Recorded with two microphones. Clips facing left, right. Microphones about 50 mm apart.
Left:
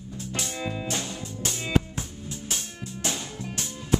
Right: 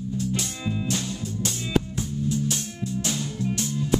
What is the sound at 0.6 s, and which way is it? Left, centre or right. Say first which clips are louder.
Music: right 1 dB; left.